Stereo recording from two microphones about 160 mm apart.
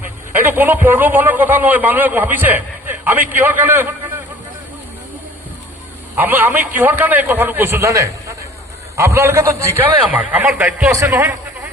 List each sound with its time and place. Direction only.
0.3 s a man's voice: 15° right (ahead or behind)
6.1 s a man's voice: 10° right (ahead or behind)